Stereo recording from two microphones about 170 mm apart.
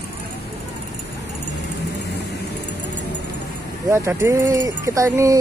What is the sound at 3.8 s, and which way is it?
Speech, 15° right (ahead or behind).